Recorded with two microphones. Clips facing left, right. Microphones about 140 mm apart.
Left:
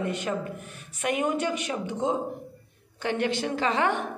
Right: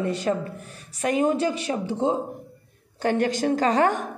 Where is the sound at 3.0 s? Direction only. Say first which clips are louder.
Right 5 dB; 40° right (ahead or behind).